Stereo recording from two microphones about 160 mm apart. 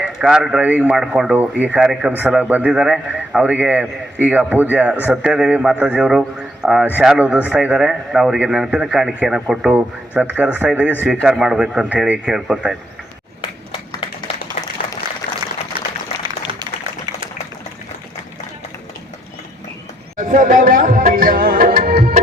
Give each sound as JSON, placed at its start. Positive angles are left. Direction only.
{"t": 0.0, "sound": "a man's voice", "side_deg": -5}
{"t": 20.1, "sound": "music", "side_deg": -55}